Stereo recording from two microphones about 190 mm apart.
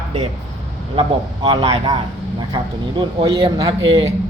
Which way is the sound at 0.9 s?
25° right (ahead or behind).